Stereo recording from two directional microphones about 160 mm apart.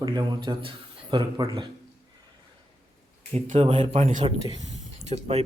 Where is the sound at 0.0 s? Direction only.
25° right (ahead or behind).